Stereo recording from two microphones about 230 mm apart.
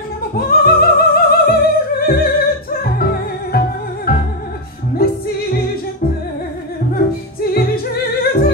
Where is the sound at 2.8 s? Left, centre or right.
Left.